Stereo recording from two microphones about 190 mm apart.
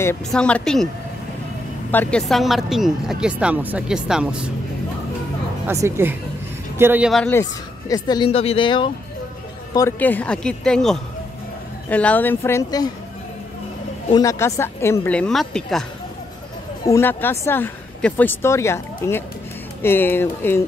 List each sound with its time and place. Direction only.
0.3 s speech: 5° left (ahead or behind)
1.9 s speech: 10° left (ahead or behind)
5.7 s a woman's voice: 15° right (ahead or behind)
7.1 s speech: 5° left (ahead or behind)
7.9 s speech: 25° left (ahead or behind)
9.8 s speech: 10° left (ahead or behind)
14.1 s speech: 15° left (ahead or behind)
16.8 s speech: 15° left (ahead or behind)